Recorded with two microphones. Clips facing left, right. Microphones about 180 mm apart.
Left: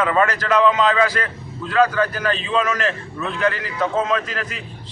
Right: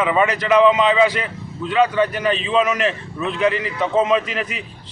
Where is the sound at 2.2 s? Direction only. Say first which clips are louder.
Right 3 dB; 15° right (ahead or behind).